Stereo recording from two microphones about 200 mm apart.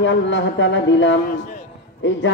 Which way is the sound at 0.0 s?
65° left (ahead or behind).